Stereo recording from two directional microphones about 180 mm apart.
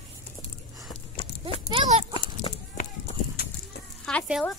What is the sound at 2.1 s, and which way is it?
Goat, 25° left (ahead or behind).